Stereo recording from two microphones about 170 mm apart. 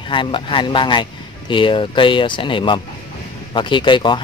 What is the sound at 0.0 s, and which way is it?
Speech, 30° left (ahead or behind).